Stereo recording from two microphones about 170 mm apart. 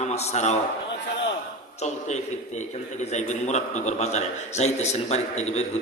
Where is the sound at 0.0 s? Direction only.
40° left (ahead or behind).